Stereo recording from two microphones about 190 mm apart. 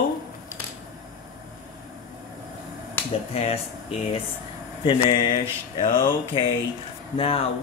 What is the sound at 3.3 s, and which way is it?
Speech, 35° left (ahead or behind).